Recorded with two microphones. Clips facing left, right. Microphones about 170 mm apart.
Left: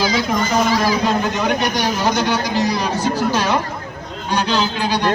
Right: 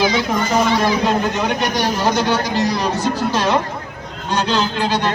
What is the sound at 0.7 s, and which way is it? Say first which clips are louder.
Speech: right 1 dB; 25° right (ahead or behind).